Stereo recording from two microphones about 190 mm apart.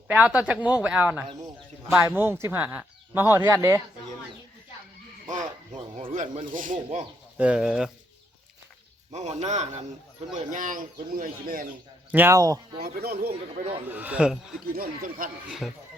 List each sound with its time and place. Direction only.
0.1 s speech: 5° right (ahead or behind)
5.3 s a sound: 40° right (ahead or behind)
6.0 s a man's voice: 35° right (ahead or behind)
7.3 s speech: 5° right (ahead or behind)
9.1 s a man's voice: 35° right (ahead or behind)
12.1 s speech: 15° right (ahead or behind)
12.8 s speech: 55° right (ahead or behind)
13.8 s speech: 10° right (ahead or behind)
14.8 s speech: 45° right (ahead or behind)
15.4 s speech: centre (ahead or behind)